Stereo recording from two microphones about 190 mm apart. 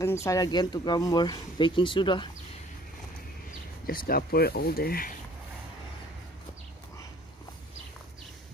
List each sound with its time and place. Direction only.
0.0 s speech: 15° left (ahead or behind)
3.8 s speech: 50° left (ahead or behind)